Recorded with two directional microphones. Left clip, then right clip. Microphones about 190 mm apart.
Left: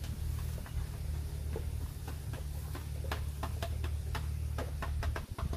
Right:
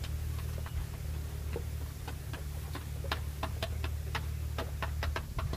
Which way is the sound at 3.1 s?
50° left (ahead or behind).